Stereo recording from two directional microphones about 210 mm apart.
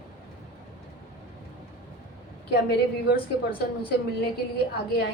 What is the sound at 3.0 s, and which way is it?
Speech, 45° left (ahead or behind).